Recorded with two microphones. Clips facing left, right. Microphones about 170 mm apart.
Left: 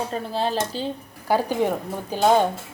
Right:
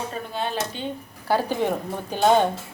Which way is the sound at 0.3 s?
30° left (ahead or behind).